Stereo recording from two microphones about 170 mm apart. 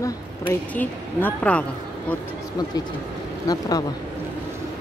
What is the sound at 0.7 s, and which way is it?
Speech, 10° left (ahead or behind).